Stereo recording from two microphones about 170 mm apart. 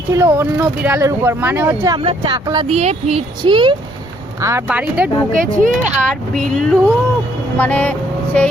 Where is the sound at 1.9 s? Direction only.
30° right (ahead or behind).